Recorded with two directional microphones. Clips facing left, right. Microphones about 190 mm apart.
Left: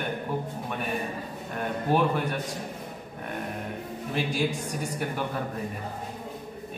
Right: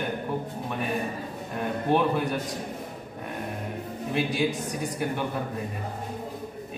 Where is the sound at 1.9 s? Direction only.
Centre (ahead or behind).